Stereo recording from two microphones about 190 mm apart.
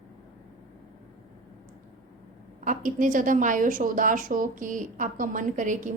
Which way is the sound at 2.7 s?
45° right (ahead or behind).